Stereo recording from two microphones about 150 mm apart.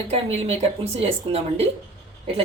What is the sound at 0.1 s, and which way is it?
A woman's voice, 45° right (ahead or behind).